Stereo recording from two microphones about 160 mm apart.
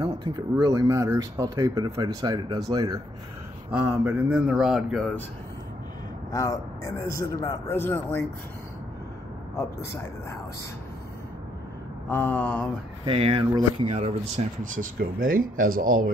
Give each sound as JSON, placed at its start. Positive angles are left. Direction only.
{"t": 0.0, "sound": "speech", "side_deg": -30}
{"t": 3.8, "sound": "speech", "side_deg": -10}
{"t": 6.3, "sound": "a man's voice", "side_deg": 20}
{"t": 12.1, "sound": "speech", "side_deg": 10}
{"t": 13.0, "sound": "speech", "side_deg": -35}